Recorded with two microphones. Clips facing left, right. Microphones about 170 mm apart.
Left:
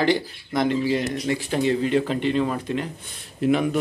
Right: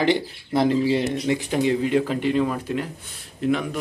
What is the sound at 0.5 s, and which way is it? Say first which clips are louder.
Speech: right 2 dB; 30° right (ahead or behind).